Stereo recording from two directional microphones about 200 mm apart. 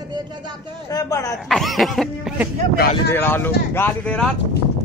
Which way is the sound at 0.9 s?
20° left (ahead or behind).